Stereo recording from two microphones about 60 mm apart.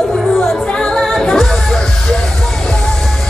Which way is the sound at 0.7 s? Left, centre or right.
Centre.